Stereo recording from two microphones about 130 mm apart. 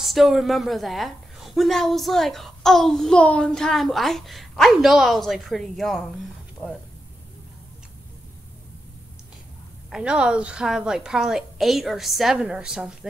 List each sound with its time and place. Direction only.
0.0 s a woman's voice: centre (ahead or behind)
9.8 s a woman's voice: 5° right (ahead or behind)